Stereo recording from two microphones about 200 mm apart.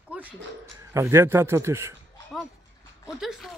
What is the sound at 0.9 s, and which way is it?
A man's voice, 15° right (ahead or behind).